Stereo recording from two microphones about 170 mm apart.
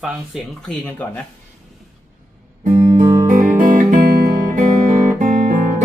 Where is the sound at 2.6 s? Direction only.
40° right (ahead or behind).